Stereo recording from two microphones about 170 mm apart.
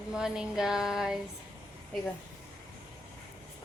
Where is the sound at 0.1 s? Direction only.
5° right (ahead or behind).